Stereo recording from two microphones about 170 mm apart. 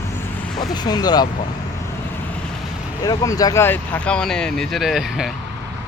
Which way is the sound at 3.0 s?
20° left (ahead or behind).